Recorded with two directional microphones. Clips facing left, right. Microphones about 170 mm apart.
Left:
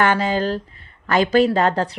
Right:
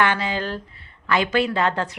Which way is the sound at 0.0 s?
45° left (ahead or behind).